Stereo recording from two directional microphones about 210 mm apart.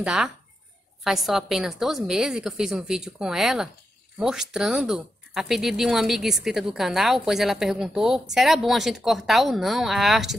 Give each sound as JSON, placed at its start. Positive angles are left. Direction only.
{"t": 0.0, "sound": "speech", "side_deg": -5}